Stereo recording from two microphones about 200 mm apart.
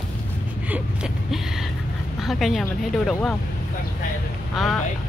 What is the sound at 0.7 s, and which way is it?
Gasp, 5° right (ahead or behind).